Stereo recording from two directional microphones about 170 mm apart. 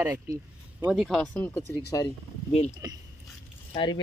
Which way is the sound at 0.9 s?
Centre (ahead or behind).